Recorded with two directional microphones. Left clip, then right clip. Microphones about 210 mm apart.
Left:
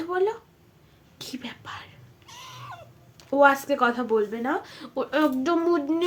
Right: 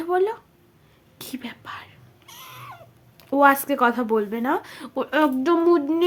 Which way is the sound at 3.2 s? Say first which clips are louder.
Right 2 dB; 30° right (ahead or behind).